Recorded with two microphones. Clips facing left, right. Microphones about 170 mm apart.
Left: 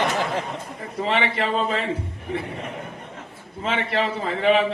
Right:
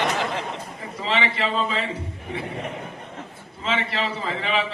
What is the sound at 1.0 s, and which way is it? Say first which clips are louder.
Speech: left 2 dB; 50° left (ahead or behind).